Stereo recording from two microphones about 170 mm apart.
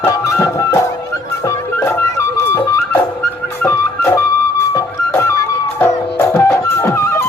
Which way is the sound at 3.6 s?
15° left (ahead or behind).